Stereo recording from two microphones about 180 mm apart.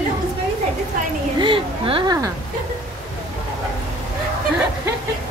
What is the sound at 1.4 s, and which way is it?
Speech, 30° right (ahead or behind).